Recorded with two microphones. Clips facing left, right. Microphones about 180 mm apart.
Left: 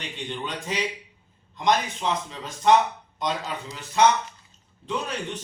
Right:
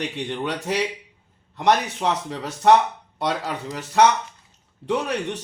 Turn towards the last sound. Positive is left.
turn(degrees=-70)  # may be behind; listen again after turning